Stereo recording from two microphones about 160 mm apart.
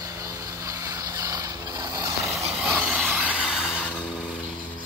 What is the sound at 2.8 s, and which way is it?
Rub, 10° right (ahead or behind).